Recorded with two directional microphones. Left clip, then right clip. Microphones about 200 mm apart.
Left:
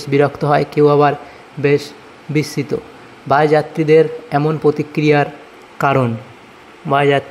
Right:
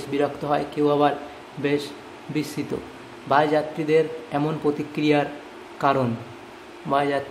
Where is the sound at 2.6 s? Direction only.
30° left (ahead or behind).